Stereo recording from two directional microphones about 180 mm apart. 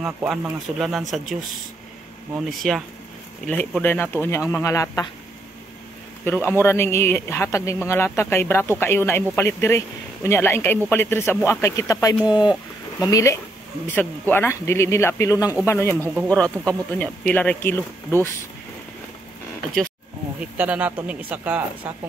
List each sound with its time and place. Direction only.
0.0 s speech: 5° right (ahead or behind)
2.3 s speech: centre (ahead or behind); by 5.0 s 15° left (ahead or behind)
6.2 s speech: 10° left (ahead or behind)
20.3 s speech: 10° right (ahead or behind)